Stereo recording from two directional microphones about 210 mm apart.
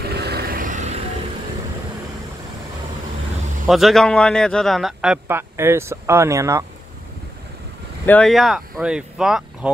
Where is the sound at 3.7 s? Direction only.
Centre (ahead or behind).